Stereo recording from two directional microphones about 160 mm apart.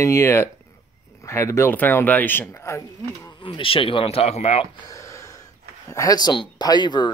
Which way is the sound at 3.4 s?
35° left (ahead or behind).